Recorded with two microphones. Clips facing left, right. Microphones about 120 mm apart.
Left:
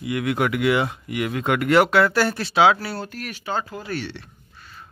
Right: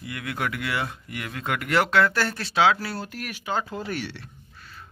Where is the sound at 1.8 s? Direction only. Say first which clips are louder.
Left 4 dB; 10° left (ahead or behind).